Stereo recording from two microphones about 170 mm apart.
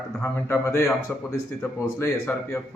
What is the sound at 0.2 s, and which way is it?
Speech, 15° left (ahead or behind).